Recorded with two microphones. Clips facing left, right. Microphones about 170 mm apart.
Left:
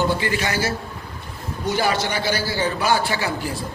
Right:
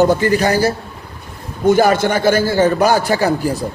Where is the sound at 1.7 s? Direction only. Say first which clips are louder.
Right 10 dB; 50° right (ahead or behind).